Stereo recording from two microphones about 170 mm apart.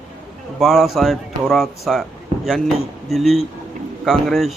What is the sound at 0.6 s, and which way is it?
Speech, centre (ahead or behind).